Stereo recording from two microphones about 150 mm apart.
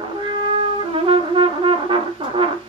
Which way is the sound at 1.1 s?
35° right (ahead or behind).